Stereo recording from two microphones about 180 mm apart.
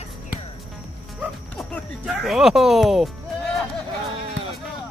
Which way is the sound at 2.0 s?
Centre (ahead or behind).